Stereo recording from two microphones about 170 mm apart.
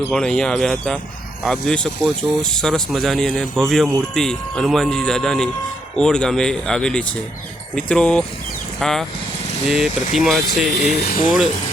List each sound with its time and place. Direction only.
0.1 s speech: 5° left (ahead or behind)
10.9 s speech: 65° left (ahead or behind)